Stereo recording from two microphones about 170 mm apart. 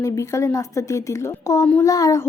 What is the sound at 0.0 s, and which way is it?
Speech, 15° left (ahead or behind).